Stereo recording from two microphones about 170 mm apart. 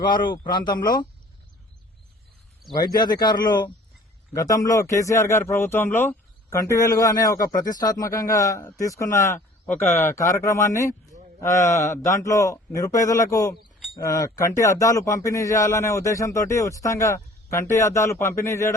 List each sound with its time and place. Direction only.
0.5 s a man's voice: 25° left (ahead or behind)
2.7 s a man's voice: 25° left (ahead or behind)